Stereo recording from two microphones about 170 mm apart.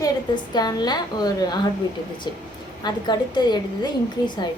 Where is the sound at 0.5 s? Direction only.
25° left (ahead or behind).